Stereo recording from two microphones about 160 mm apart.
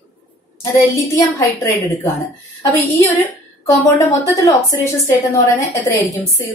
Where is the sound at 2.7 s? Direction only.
15° left (ahead or behind).